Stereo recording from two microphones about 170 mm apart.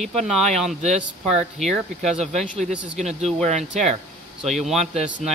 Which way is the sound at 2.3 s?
Centre (ahead or behind).